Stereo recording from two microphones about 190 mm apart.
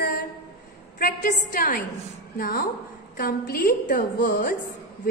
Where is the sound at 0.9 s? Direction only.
45° left (ahead or behind).